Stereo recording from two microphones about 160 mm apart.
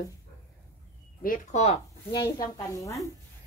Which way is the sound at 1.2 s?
60° left (ahead or behind).